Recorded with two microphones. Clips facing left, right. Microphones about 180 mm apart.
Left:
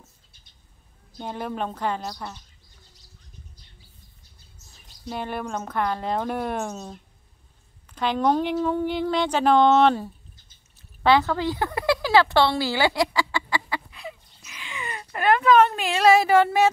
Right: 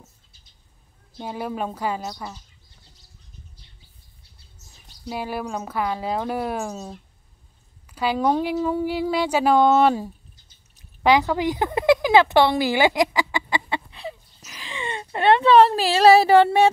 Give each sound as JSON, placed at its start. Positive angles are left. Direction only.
{"t": 1.1, "sound": "speech", "side_deg": -5}
{"t": 5.0, "sound": "a woman's voice", "side_deg": -5}